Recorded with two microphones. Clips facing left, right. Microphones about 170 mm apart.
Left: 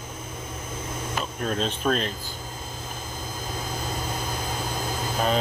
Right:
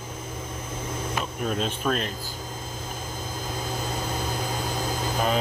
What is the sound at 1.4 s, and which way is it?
Speech, 10° right (ahead or behind).